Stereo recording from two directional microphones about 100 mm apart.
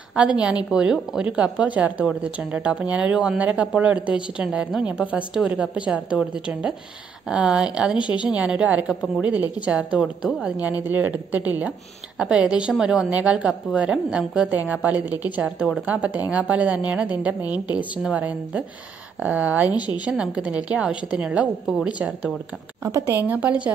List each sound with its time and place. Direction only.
0.1 s a woman's voice: 10° right (ahead or behind)
22.8 s a woman's voice: 30° right (ahead or behind)
23.2 s a woman's voice: 15° right (ahead or behind)